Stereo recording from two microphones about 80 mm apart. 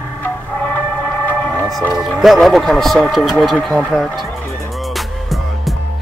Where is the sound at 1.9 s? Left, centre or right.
Centre.